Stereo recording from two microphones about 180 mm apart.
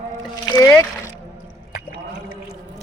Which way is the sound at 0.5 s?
15° left (ahead or behind).